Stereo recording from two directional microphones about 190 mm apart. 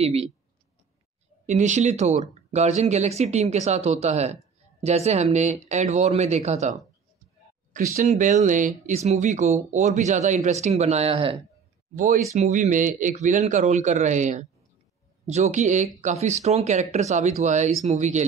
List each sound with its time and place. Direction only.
0.0 s speech: 35° right (ahead or behind)
1.4 s speech: 40° right (ahead or behind)
7.9 s speech: 40° right (ahead or behind)
11.9 s speech: 45° right (ahead or behind)